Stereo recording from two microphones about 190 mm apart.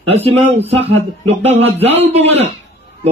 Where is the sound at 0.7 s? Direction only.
30° right (ahead or behind).